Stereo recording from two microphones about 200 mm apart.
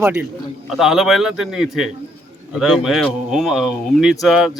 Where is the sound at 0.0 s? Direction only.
5° right (ahead or behind).